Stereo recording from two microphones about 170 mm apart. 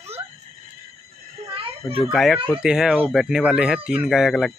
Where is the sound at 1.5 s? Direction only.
30° right (ahead or behind).